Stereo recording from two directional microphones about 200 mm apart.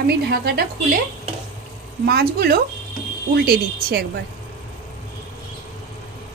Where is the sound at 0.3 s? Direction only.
50° right (ahead or behind).